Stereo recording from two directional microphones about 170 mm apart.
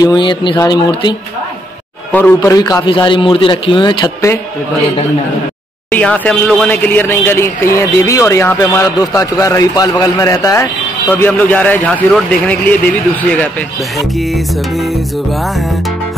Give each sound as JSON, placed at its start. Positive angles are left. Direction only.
{"t": 0.0, "sound": "a man's voice", "side_deg": 25}
{"t": 2.1, "sound": "a man's voice", "side_deg": 10}
{"t": 2.5, "sound": "a man's voice", "side_deg": 25}
{"t": 5.9, "sound": "a man's voice", "side_deg": 10}
{"t": 13.9, "sound": "music", "side_deg": 0}